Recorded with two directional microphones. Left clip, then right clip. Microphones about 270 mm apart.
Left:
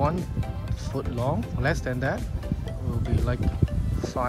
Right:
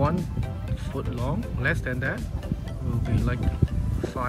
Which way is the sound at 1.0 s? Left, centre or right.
Centre.